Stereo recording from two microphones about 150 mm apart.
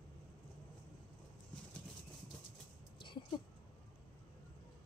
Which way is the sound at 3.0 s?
30° left (ahead or behind).